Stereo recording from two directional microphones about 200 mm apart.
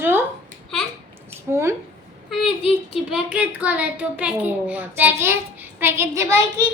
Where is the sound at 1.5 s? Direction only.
15° right (ahead or behind).